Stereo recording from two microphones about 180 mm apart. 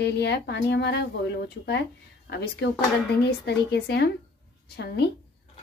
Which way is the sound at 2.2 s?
70° left (ahead or behind).